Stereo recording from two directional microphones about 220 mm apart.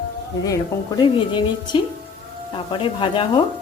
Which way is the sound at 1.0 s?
20° left (ahead or behind).